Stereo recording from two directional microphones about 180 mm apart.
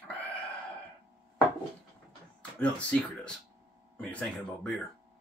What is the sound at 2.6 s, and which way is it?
Speech, 5° left (ahead or behind).